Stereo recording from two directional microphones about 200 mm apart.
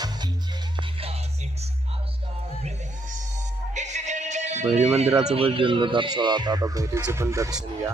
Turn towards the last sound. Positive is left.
turn(degrees=-15)  # may be behind; listen again after turning